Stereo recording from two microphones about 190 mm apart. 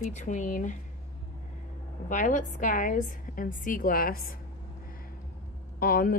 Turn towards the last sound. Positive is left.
turn(degrees=50)  # may be behind; listen again after turning